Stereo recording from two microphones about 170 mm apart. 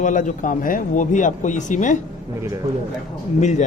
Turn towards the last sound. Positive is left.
turn(degrees=45)  # may be behind; listen again after turning